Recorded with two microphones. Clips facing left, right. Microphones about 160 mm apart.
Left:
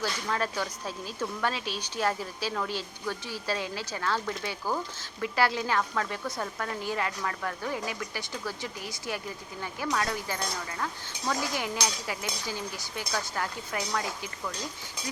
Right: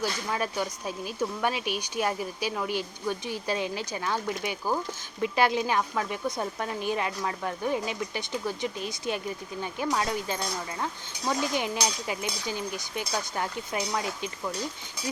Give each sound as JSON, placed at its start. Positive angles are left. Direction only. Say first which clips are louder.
{"t": 0.0, "sound": "speech", "louder": "right 1 dB", "side_deg": -15}